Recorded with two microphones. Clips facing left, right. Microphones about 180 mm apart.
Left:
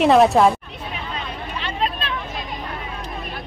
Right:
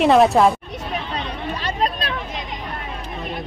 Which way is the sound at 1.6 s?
40° right (ahead or behind).